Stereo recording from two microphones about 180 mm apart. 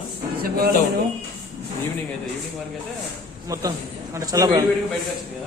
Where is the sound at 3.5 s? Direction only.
20° right (ahead or behind).